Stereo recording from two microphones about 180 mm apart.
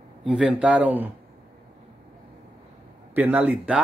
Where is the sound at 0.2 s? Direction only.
5° right (ahead or behind).